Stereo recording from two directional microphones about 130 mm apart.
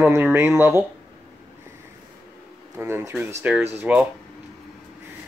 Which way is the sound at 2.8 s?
20° right (ahead or behind).